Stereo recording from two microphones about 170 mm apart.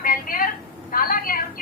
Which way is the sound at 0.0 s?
60° left (ahead or behind).